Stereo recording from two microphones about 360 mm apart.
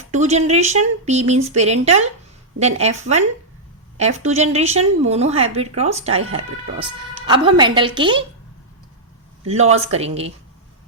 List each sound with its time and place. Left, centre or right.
0.1 s speech: centre
9.7 s speech: centre